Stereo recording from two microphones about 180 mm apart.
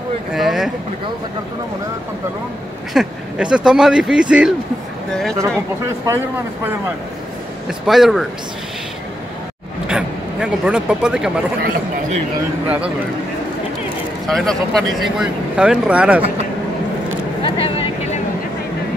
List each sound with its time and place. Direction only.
0.3 s speech: centre (ahead or behind)
2.9 s speech: 5° right (ahead or behind)
6.0 s speech: 15° right (ahead or behind)
7.6 s speech: centre (ahead or behind)
9.8 s a man's voice: 5° right (ahead or behind)
12.6 s speech: 5° right (ahead or behind)
14.2 s speech: centre (ahead or behind)
17.4 s a sound: 30° left (ahead or behind)